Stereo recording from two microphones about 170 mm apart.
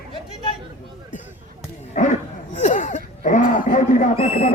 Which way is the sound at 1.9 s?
45° left (ahead or behind).